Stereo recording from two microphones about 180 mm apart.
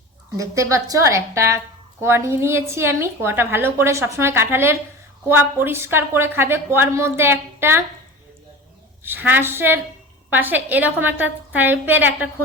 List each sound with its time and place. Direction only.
0.3 s a woman's voice: 15° right (ahead or behind)
9.0 s a woman's voice: 10° right (ahead or behind)